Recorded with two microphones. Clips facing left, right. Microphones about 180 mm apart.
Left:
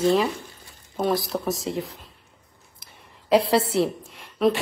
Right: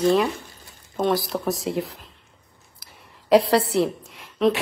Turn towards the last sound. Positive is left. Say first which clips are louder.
# right 1 dB
turn(degrees=0)  # may be behind; listen again after turning